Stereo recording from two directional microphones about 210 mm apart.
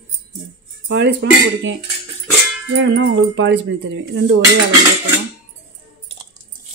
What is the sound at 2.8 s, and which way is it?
Speech, 55° right (ahead or behind).